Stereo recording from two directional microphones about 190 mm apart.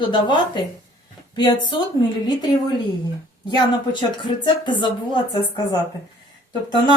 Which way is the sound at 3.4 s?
25° left (ahead or behind).